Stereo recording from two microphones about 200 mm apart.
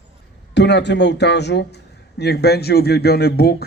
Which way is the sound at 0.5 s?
60° left (ahead or behind).